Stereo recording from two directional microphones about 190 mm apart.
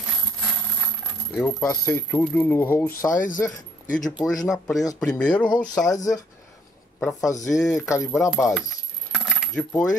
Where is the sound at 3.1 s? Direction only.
45° left (ahead or behind).